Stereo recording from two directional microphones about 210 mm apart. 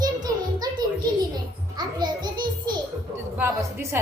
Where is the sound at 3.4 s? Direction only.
10° right (ahead or behind).